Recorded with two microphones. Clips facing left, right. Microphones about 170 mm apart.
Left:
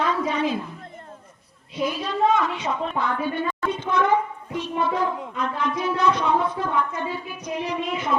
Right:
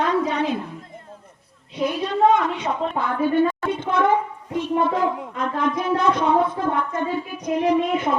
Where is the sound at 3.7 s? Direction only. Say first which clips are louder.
Right 2 dB; 55° right (ahead or behind).